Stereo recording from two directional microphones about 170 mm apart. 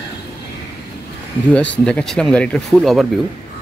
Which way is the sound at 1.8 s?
5° left (ahead or behind).